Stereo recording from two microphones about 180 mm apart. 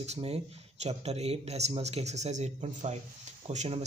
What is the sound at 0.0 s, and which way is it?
Speech, 35° right (ahead or behind).